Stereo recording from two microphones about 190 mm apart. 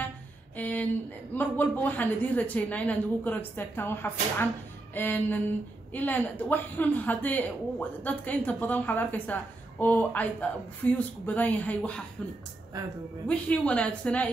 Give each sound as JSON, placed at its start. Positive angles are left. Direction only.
{"t": 0.6, "sound": "a woman's voice", "side_deg": 10}
{"t": 12.7, "sound": "a woman's voice", "side_deg": -20}
{"t": 13.3, "sound": "a woman's voice", "side_deg": 5}